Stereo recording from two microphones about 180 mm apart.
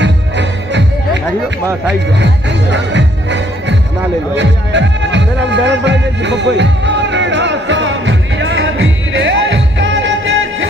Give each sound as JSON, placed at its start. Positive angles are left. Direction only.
{"t": 0.0, "sound": "music", "side_deg": -80}
{"t": 2.1, "sound": "music", "side_deg": -75}